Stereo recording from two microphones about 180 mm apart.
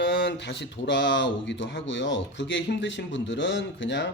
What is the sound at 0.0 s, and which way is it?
Speech, 75° left (ahead or behind).